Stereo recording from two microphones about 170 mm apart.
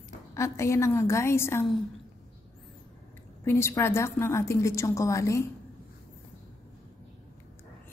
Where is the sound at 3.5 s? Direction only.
15° left (ahead or behind).